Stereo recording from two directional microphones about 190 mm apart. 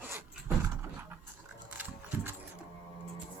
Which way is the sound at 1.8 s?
10° right (ahead or behind).